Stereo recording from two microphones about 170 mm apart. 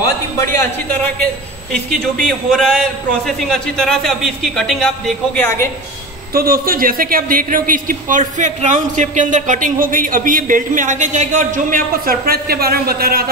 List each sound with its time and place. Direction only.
2.2 s a man's voice: 5° left (ahead or behind)
6.3 s a man's voice: 60° right (ahead or behind)